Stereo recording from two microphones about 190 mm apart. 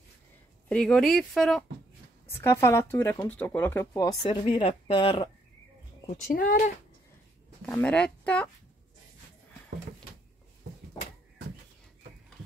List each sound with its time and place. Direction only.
0.7 s speech: 5° left (ahead or behind)
2.4 s speech: 15° left (ahead or behind)
6.2 s speech: 45° left (ahead or behind)
7.6 s speech: 5° left (ahead or behind)